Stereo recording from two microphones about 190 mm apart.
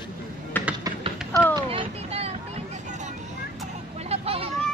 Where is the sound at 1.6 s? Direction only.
30° right (ahead or behind).